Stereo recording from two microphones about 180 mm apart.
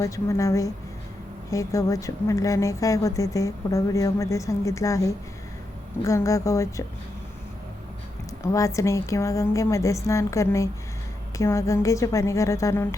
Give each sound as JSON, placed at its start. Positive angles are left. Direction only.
{"t": 0.0, "sound": "a woman's voice", "side_deg": 15}
{"t": 8.5, "sound": "a woman's voice", "side_deg": 15}